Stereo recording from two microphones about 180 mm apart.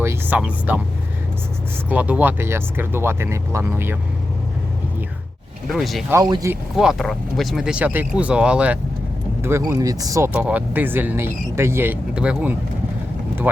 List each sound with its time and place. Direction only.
0.0 s speech: 10° right (ahead or behind)
1.9 s speech: 10° right (ahead or behind)
5.6 s speech: centre (ahead or behind)
6.1 s speech: 20° right (ahead or behind)
6.5 s speech: 5° right (ahead or behind)